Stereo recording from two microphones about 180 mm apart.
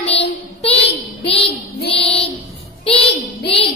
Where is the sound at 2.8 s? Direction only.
30° left (ahead or behind).